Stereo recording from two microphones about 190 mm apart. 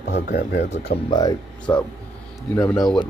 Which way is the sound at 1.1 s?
20° left (ahead or behind).